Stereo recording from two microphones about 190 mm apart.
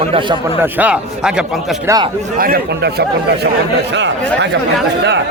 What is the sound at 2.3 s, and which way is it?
A man's voice, 50° right (ahead or behind).